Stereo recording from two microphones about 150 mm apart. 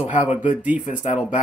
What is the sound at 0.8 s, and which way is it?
Speech, 55° left (ahead or behind).